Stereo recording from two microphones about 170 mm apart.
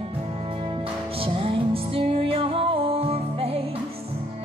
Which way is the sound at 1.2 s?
35° right (ahead or behind).